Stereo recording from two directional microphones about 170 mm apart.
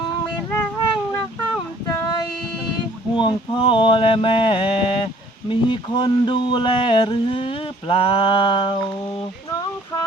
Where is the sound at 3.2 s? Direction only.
30° left (ahead or behind).